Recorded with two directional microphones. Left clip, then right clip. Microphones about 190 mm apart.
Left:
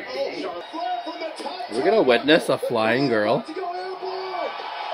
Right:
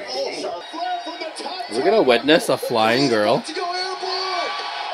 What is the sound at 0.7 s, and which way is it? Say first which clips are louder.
Speech: even; 5° right (ahead or behind).